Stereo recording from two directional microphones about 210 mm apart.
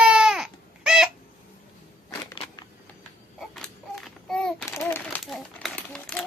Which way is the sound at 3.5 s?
Centre (ahead or behind).